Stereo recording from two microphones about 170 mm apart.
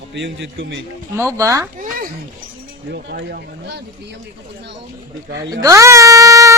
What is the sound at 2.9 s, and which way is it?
Speech, 70° right (ahead or behind).